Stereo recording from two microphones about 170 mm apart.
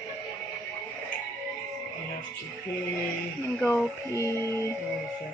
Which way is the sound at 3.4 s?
15° left (ahead or behind).